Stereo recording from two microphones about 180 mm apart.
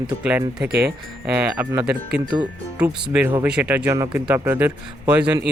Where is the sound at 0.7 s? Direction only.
65° right (ahead or behind).